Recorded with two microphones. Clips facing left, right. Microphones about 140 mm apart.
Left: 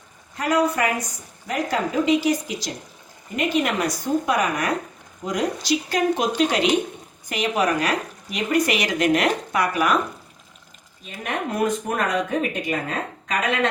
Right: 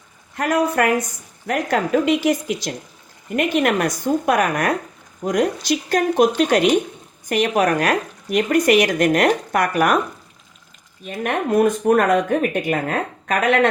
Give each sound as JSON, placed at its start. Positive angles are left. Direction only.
{"t": 0.3, "sound": "a woman's voice", "side_deg": -60}
{"t": 3.3, "sound": "a woman's voice", "side_deg": -60}
{"t": 11.0, "sound": "speech", "side_deg": -50}